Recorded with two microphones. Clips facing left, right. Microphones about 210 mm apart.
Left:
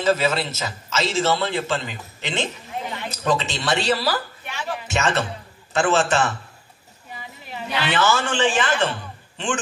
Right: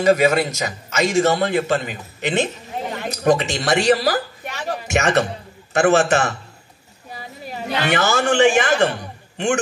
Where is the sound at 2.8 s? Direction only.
45° right (ahead or behind).